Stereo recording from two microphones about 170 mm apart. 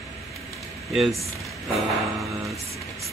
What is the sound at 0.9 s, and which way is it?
Speech, centre (ahead or behind).